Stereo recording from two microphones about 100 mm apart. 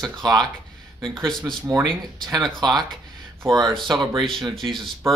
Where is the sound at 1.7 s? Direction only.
40° right (ahead or behind).